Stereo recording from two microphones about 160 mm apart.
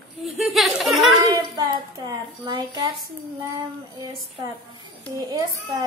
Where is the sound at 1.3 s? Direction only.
25° right (ahead or behind).